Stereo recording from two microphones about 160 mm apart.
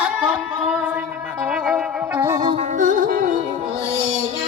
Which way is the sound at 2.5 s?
45° right (ahead or behind).